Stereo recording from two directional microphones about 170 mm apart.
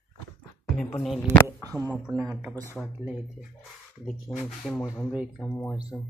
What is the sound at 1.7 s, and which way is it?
Speech, 5° right (ahead or behind).